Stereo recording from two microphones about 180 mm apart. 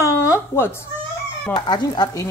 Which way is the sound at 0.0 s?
15° left (ahead or behind).